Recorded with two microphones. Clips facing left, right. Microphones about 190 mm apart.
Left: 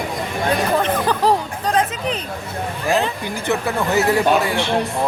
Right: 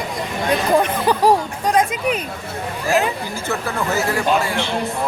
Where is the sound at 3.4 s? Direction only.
15° left (ahead or behind).